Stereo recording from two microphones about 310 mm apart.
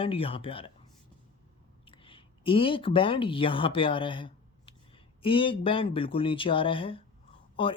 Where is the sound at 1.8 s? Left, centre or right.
Centre.